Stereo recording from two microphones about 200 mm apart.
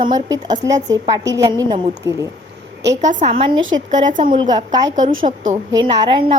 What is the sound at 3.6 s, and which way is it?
Speech, 70° right (ahead or behind).